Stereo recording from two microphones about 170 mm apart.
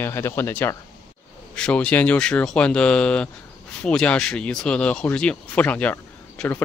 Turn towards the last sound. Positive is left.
turn(degrees=5)  # may be behind; listen again after turning